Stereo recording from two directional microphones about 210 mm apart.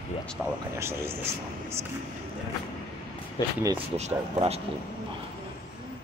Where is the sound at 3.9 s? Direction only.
30° right (ahead or behind).